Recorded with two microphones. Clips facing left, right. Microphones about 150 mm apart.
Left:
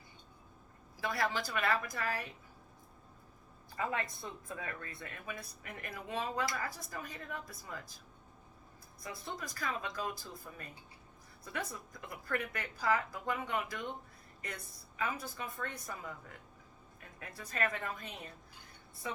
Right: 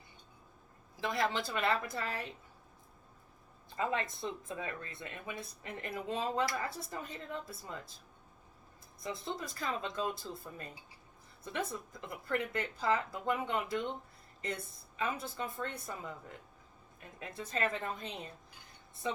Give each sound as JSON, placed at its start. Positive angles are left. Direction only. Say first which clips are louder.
{"t": 1.0, "sound": "speech", "louder": "right 2 dB", "side_deg": -20}
{"t": 3.8, "sound": "speech", "louder": "right 3 dB", "side_deg": -25}
{"t": 9.0, "sound": "speech", "louder": "right 4 dB", "side_deg": -25}